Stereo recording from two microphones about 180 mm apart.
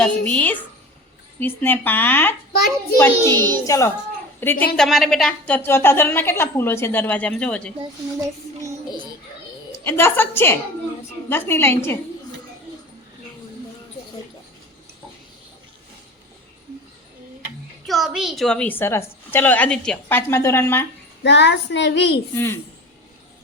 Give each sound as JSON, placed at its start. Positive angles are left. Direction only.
{"t": 0.0, "sound": "a woman's voice", "side_deg": 5}
{"t": 4.6, "sound": "a woman's voice", "side_deg": 0}
{"t": 9.8, "sound": "a woman's voice", "side_deg": 15}
{"t": 17.8, "sound": "a woman's voice", "side_deg": 0}
{"t": 21.2, "sound": "a woman's voice", "side_deg": 75}
{"t": 22.4, "sound": "a woman's voice", "side_deg": 10}